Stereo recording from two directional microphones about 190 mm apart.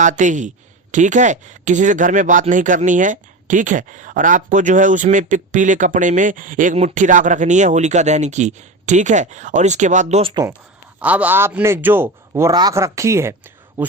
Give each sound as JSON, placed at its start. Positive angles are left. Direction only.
{"t": 0.0, "sound": "speech", "side_deg": -40}
{"t": 11.0, "sound": "a man's voice", "side_deg": -10}